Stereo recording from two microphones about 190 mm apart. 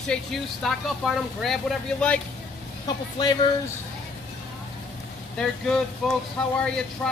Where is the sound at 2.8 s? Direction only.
20° left (ahead or behind).